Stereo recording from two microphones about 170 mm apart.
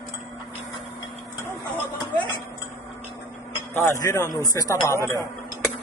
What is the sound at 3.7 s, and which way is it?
A man's voice, 15° left (ahead or behind).